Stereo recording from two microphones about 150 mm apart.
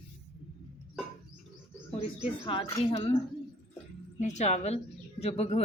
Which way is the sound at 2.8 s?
40° left (ahead or behind).